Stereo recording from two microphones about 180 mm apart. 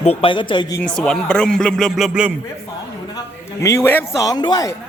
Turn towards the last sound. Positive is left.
turn(degrees=25)  # may be behind; listen again after turning